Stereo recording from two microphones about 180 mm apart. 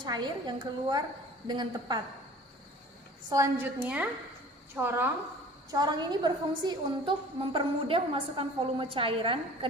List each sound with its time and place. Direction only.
0.0 s a woman's voice: 25° right (ahead or behind)
3.2 s a woman's voice: 15° right (ahead or behind)
5.7 s a woman's voice: 25° right (ahead or behind)